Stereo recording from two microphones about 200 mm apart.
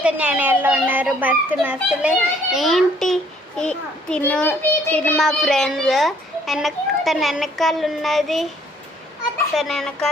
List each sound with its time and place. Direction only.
0.0 s a child's voice: 10° right (ahead or behind)
9.6 s a child's voice: centre (ahead or behind)